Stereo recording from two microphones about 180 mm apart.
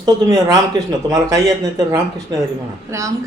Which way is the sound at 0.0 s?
20° right (ahead or behind).